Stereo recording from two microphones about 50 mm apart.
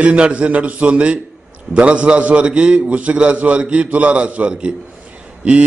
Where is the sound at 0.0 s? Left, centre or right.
Right.